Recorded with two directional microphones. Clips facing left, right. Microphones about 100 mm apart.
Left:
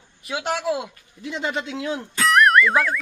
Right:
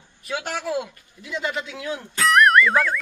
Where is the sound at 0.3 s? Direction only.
15° left (ahead or behind).